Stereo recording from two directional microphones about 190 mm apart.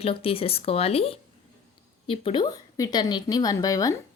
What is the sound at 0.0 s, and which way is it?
A woman's voice, 30° left (ahead or behind).